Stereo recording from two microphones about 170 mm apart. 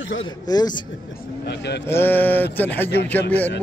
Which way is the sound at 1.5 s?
85° left.